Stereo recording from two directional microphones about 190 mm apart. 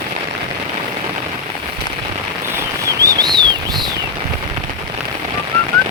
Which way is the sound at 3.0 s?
20° right (ahead or behind).